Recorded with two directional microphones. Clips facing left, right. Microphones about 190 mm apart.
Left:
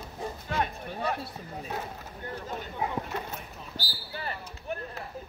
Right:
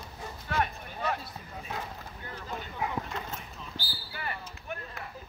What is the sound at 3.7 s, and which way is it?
Basketball bounce, 40° left (ahead or behind).